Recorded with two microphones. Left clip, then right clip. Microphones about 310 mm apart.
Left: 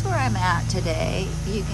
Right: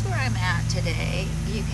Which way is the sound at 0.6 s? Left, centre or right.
Centre.